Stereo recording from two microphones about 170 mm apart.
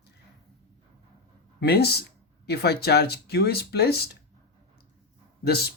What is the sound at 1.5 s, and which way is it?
Speech, 70° left (ahead or behind).